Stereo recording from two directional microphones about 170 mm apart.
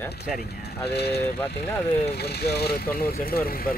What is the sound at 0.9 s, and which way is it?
Speech, 75° left (ahead or behind).